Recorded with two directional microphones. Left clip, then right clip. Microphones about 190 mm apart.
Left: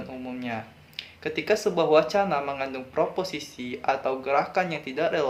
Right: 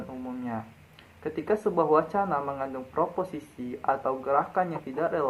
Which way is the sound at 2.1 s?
25° left (ahead or behind).